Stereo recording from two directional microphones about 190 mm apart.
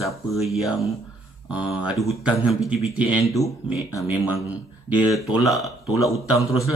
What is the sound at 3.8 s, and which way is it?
Speech, 15° left (ahead or behind).